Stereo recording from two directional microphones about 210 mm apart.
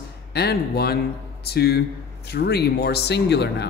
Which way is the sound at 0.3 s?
50° left (ahead or behind).